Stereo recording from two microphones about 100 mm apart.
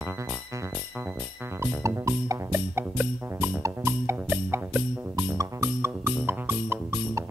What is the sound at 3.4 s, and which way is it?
Music, 25° right (ahead or behind).